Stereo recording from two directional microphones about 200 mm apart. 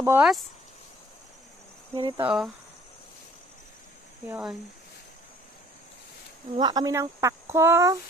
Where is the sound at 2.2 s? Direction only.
5° right (ahead or behind).